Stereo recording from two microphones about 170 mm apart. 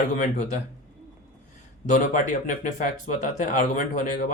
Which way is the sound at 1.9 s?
45° left (ahead or behind).